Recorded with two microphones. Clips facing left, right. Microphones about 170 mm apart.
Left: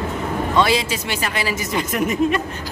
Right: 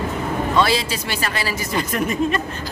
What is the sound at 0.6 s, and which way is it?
Speech, 15° left (ahead or behind).